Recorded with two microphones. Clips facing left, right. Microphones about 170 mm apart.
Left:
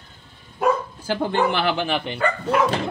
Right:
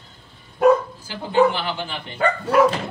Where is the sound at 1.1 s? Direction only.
65° left (ahead or behind).